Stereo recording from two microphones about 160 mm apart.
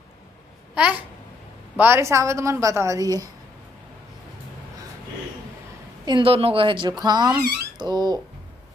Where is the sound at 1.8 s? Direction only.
15° right (ahead or behind).